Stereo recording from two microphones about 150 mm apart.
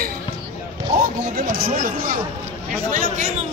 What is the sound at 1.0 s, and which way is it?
Speech, 75° right (ahead or behind).